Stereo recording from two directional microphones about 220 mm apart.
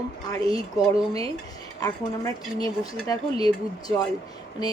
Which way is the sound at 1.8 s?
15° left (ahead or behind).